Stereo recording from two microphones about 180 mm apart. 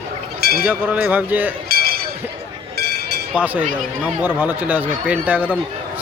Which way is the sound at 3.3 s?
10° right (ahead or behind).